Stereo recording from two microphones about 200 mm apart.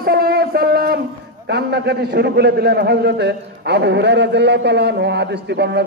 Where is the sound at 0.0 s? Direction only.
50° right (ahead or behind).